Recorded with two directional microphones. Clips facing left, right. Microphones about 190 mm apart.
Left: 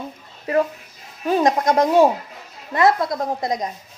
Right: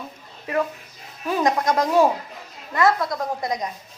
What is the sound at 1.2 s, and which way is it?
A woman's voice, 30° left (ahead or behind).